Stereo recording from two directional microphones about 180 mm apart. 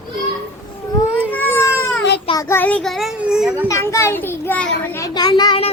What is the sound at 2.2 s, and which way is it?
A child's voice, 20° left (ahead or behind).